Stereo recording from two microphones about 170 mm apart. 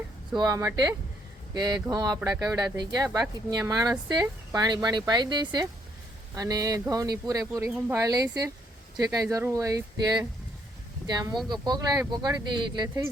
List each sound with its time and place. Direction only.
0.3 s speech: 20° right (ahead or behind)
11.4 s speech: 25° right (ahead or behind)